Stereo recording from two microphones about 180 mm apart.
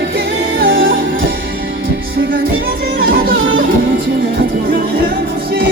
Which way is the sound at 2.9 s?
55° right (ahead or behind).